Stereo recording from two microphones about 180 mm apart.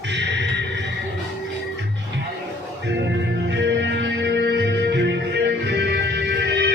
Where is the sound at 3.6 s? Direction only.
80° right.